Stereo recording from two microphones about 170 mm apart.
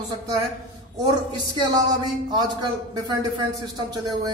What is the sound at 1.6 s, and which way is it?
Speech, 25° right (ahead or behind).